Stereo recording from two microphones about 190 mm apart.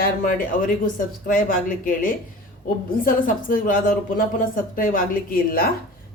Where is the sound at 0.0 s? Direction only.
45° left (ahead or behind).